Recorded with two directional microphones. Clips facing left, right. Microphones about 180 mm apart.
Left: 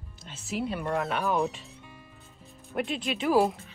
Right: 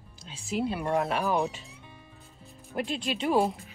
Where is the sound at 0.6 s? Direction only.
Centre (ahead or behind).